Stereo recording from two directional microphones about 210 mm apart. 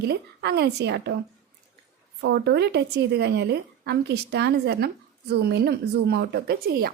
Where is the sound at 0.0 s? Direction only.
50° right (ahead or behind).